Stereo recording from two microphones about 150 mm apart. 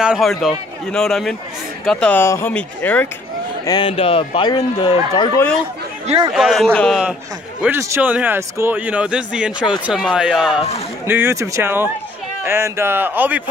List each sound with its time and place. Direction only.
0.0 s a man's voice: centre (ahead or behind)
3.8 s speech: 40° left (ahead or behind)
6.3 s a man's voice: centre (ahead or behind)
7.6 s speech: 15° right (ahead or behind)
11.1 s speech: 15° right (ahead or behind)